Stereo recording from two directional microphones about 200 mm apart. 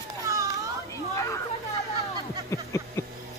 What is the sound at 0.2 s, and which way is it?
Children playing, 15° right (ahead or behind).